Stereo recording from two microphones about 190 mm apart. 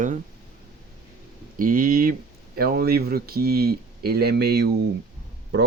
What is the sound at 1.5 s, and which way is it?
Speech, 50° right (ahead or behind).